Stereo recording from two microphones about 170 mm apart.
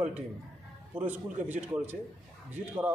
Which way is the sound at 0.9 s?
10° right (ahead or behind).